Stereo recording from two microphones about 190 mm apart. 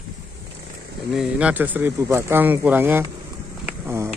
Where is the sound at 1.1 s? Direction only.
5° right (ahead or behind).